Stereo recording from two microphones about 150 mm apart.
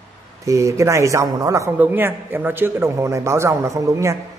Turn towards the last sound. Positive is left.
turn(degrees=-20)  # may be behind; listen again after turning